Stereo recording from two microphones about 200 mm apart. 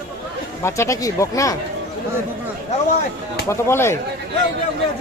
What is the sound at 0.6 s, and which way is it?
Speech, 15° left (ahead or behind).